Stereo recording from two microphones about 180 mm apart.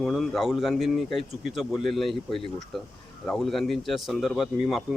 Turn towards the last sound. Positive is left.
turn(degrees=0)  # may be behind; listen again after turning